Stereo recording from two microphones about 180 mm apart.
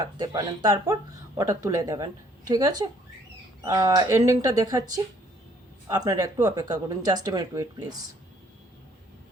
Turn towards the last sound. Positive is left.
turn(degrees=-20)  # may be behind; listen again after turning